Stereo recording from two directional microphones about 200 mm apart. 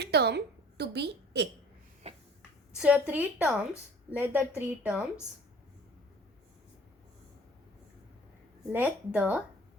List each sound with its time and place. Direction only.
0.0 s a woman's voice: 55° right (ahead or behind)
2.0 s a sound: 30° right (ahead or behind)
2.7 s a woman's voice: 5° right (ahead or behind)
8.7 s a woman's voice: 10° right (ahead or behind)